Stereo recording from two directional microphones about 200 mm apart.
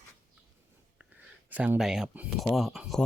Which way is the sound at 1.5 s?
10° right (ahead or behind).